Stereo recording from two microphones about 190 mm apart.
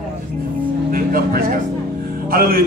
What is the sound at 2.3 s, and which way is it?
Speech, 50° right (ahead or behind).